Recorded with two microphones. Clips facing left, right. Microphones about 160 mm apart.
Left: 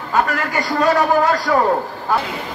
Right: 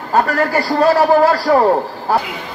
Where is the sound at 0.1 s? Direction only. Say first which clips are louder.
Right 4 dB; 35° right (ahead or behind).